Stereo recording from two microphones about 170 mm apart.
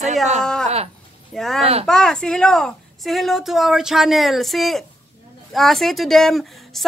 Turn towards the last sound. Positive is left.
turn(degrees=0)  # may be behind; listen again after turning